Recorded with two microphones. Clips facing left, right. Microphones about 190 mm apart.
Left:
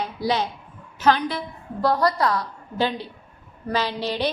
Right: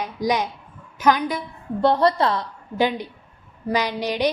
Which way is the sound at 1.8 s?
25° right (ahead or behind).